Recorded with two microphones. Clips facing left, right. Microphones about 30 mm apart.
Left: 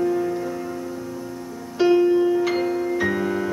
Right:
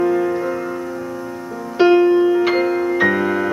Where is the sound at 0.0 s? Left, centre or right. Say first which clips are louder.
Right 5 dB; right.